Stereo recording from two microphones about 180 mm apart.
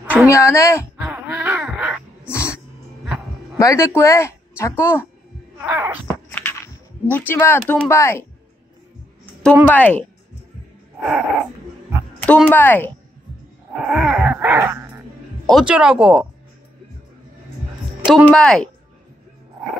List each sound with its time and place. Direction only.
0.0 s a sound: 5° right (ahead or behind)
0.3 s speech: 15° left (ahead or behind)
1.0 s wail: 10° right (ahead or behind)
3.5 s speech: 15° left (ahead or behind)
5.6 s wail: 10° right (ahead or behind)
6.0 s a sound: 10° left (ahead or behind)
7.1 s speech: 10° left (ahead or behind)
9.2 s a sound: 5° left (ahead or behind)
9.7 s speech: 10° left (ahead or behind)
12.2 s speech: 10° left (ahead or behind)
13.8 s wail: 5° right (ahead or behind)
15.4 s speech: 5° right (ahead or behind)
18.0 s speech: 5° right (ahead or behind)